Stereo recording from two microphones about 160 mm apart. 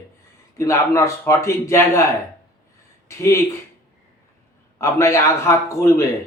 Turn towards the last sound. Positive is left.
turn(degrees=20)  # may be behind; listen again after turning